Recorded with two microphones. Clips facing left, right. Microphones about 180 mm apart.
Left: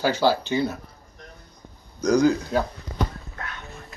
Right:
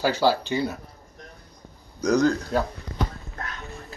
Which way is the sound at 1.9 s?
5° right (ahead or behind).